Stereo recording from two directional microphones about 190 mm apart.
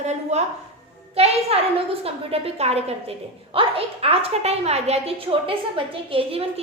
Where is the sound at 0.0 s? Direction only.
35° right (ahead or behind).